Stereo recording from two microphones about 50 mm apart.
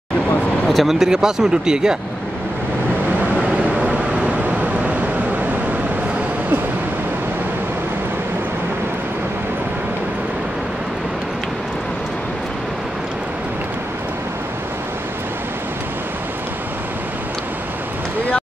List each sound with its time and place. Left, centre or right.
0.7 s speech: centre
3.2 s vehicle: right